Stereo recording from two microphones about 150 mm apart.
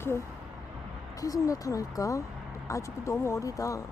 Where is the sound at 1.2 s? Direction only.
25° left (ahead or behind).